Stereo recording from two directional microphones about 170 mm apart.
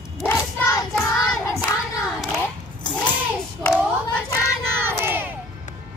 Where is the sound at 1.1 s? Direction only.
20° left (ahead or behind).